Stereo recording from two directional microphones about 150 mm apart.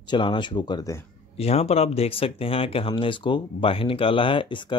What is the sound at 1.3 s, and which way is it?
Speech, 45° left (ahead or behind).